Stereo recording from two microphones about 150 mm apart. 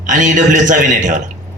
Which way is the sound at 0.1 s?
60° right (ahead or behind).